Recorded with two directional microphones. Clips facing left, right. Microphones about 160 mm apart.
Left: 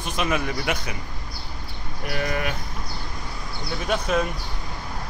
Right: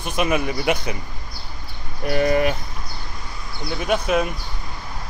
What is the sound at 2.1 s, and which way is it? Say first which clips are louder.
Speech: right 8 dB; 30° right (ahead or behind).